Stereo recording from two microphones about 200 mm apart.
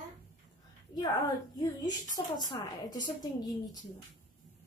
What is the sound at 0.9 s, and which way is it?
A woman's voice, 20° left (ahead or behind).